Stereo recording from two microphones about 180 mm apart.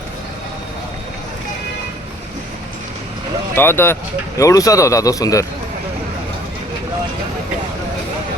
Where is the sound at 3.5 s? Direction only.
10° left (ahead or behind).